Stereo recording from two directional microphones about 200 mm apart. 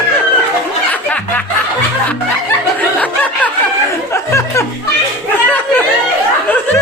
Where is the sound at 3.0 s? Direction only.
5° left (ahead or behind).